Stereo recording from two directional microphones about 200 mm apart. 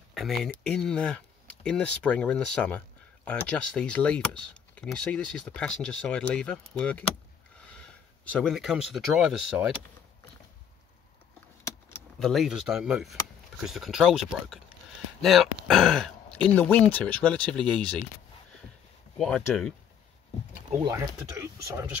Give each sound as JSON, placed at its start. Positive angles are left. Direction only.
{"t": 0.1, "sound": "speech", "side_deg": 0}
{"t": 8.3, "sound": "speech", "side_deg": 5}
{"t": 12.2, "sound": "speech", "side_deg": 0}
{"t": 19.1, "sound": "speech", "side_deg": 5}
{"t": 20.8, "sound": "speech", "side_deg": -15}